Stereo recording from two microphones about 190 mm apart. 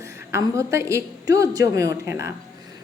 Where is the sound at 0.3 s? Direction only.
15° right (ahead or behind).